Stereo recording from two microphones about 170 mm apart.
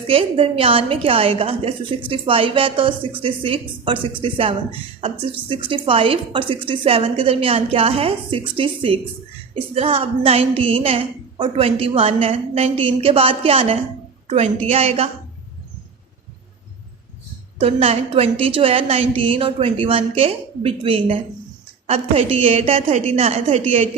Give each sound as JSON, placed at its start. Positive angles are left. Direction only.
{"t": 0.1, "sound": "a woman's voice", "side_deg": -35}
{"t": 17.6, "sound": "a woman's voice", "side_deg": -35}